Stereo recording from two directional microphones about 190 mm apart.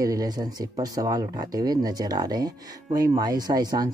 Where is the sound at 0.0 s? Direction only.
20° right (ahead or behind).